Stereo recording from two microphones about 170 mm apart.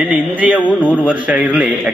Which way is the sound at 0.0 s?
10° right (ahead or behind).